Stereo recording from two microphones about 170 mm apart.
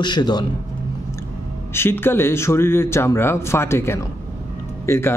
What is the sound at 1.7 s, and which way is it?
A man's voice, 15° left (ahead or behind).